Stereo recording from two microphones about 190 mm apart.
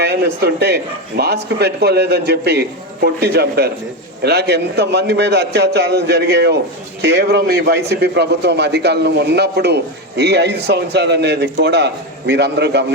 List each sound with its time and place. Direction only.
0.0 s a man's voice: 60° right (ahead or behind)